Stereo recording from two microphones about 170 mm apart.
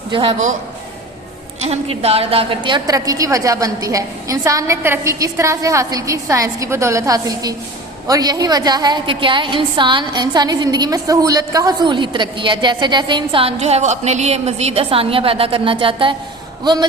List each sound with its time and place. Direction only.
0.1 s a man's voice: 30° right (ahead or behind)
1.6 s a woman's voice: 40° right (ahead or behind)